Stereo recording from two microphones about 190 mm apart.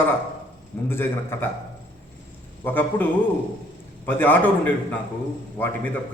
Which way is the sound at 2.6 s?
10° left (ahead or behind).